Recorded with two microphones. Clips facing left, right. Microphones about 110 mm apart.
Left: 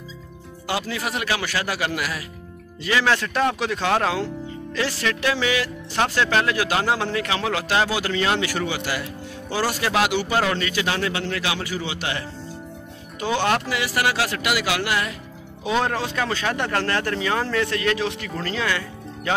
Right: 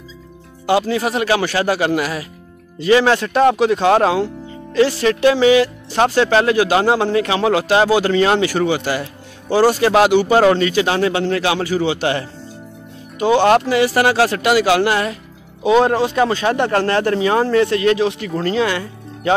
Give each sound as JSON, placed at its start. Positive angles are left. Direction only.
{"t": 0.7, "sound": "speech", "side_deg": -25}
{"t": 13.4, "sound": "speech", "side_deg": -30}